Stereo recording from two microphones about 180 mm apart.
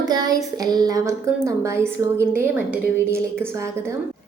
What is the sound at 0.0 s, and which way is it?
A woman's voice, 20° right (ahead or behind).